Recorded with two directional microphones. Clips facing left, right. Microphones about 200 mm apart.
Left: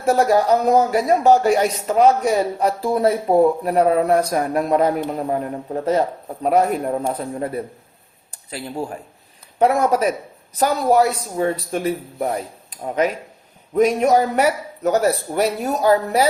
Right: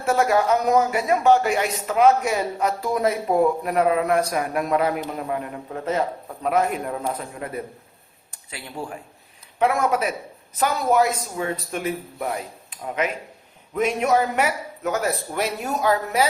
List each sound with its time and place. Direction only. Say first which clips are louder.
0.0 s speech: left 4 dB; 35° left (ahead or behind)